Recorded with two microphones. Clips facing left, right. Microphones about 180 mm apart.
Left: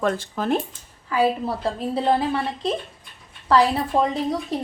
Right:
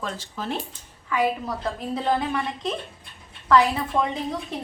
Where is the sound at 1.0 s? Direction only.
30° left (ahead or behind).